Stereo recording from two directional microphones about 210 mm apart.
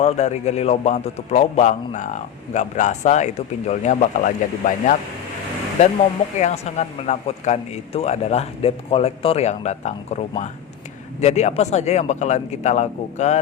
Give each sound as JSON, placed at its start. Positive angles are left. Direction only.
{"t": 0.0, "sound": "a man's voice", "side_deg": 30}
{"t": 6.4, "sound": "a man's voice", "side_deg": 30}